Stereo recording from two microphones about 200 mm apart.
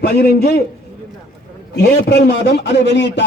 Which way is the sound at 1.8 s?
55° left (ahead or behind).